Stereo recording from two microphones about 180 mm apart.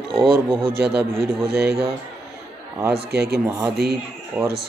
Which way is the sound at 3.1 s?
65° right (ahead or behind).